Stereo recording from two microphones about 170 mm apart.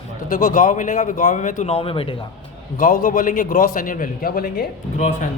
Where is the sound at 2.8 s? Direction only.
55° left (ahead or behind).